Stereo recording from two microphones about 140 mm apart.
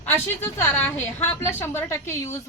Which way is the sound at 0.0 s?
15° left (ahead or behind).